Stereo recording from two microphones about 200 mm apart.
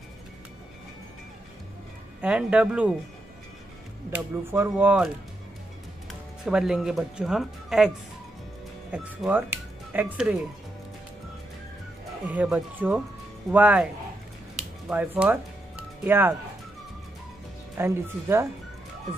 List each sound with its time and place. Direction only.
2.2 s speech: 5° right (ahead or behind)
4.1 s speech: 10° right (ahead or behind)
6.4 s speech: 5° right (ahead or behind)
8.9 s speech: 10° right (ahead or behind)
12.3 s speech: 10° right (ahead or behind)
14.9 s speech: 5° right (ahead or behind)
17.7 s speech: 10° right (ahead or behind)